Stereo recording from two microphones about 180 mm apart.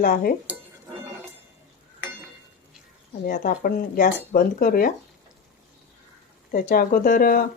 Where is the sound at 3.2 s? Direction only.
50° left (ahead or behind).